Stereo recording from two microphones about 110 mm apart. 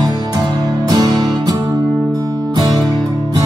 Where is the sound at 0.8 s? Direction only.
35° right (ahead or behind).